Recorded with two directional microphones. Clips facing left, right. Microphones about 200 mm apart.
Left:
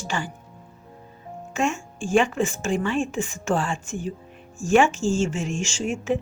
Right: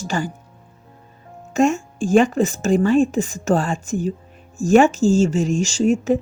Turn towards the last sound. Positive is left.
turn(degrees=-40)  # may be behind; listen again after turning